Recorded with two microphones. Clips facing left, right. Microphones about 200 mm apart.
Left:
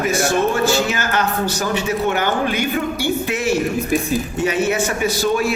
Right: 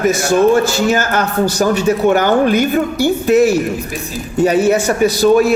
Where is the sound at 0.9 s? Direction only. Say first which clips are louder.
Right 5 dB; 45° right (ahead or behind).